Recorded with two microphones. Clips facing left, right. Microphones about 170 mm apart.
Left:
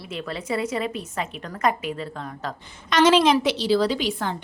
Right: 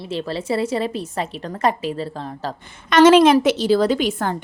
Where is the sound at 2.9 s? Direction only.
50° right (ahead or behind).